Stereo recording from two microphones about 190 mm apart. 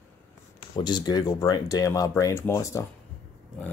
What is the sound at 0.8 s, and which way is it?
Speech, 20° left (ahead or behind).